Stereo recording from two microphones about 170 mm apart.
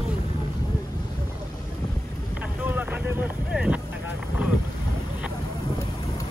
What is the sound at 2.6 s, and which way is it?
Boat, 10° right (ahead or behind).